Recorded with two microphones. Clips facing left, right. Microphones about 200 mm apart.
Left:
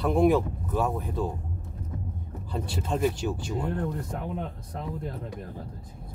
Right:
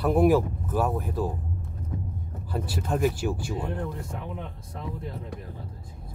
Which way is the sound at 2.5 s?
5° right (ahead or behind).